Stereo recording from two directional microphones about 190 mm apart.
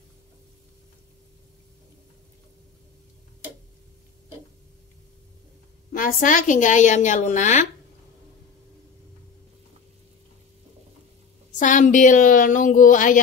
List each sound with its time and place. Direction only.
5.9 s a woman's voice: 45° left (ahead or behind)
11.5 s a woman's voice: 40° left (ahead or behind)